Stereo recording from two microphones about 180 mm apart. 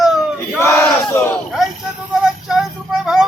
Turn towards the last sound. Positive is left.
turn(degrees=0)  # may be behind; listen again after turning